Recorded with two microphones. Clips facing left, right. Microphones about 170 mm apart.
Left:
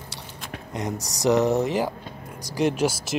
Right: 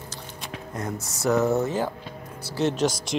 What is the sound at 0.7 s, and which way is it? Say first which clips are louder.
Speech: left 3 dB; 15° left (ahead or behind).